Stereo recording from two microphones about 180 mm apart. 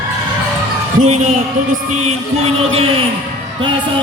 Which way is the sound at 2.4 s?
30° right (ahead or behind).